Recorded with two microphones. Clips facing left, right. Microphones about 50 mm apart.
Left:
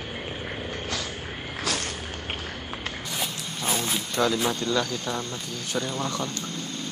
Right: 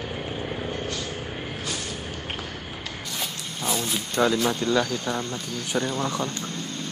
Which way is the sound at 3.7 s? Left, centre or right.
Left.